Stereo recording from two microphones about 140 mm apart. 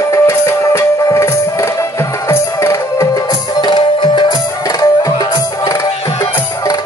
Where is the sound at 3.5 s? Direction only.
35° left (ahead or behind).